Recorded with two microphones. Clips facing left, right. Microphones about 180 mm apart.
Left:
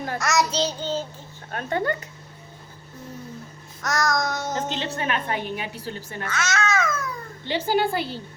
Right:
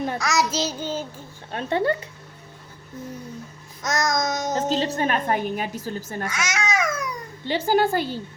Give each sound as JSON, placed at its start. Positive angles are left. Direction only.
{"t": 0.2, "sound": "child singing", "side_deg": 0}
{"t": 1.5, "sound": "child singing", "side_deg": -25}
{"t": 3.8, "sound": "child singing", "side_deg": -20}
{"t": 4.5, "sound": "a woman's voice", "side_deg": -40}
{"t": 6.2, "sound": "babbling", "side_deg": -10}
{"t": 7.4, "sound": "speech", "side_deg": -45}